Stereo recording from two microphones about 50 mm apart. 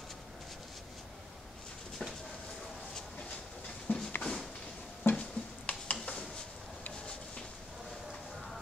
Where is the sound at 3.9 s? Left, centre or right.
Left.